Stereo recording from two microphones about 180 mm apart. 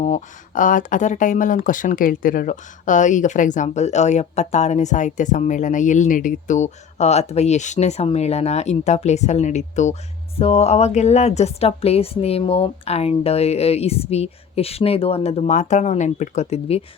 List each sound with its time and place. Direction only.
0.0 s a woman's voice: 45° left (ahead or behind)